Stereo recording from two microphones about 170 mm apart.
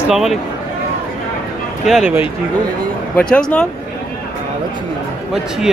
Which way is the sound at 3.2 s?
5° left (ahead or behind).